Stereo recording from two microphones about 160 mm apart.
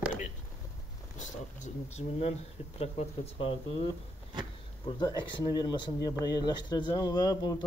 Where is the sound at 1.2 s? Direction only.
45° left (ahead or behind).